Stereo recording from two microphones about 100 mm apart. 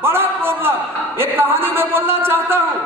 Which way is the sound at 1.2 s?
20° right (ahead or behind).